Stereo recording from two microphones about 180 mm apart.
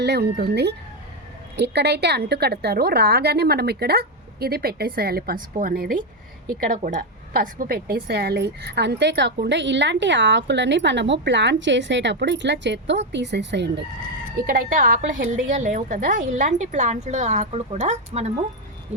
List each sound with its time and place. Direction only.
0.0 s a woman's voice: 65° right (ahead or behind)
14.3 s a woman's voice: 55° right (ahead or behind)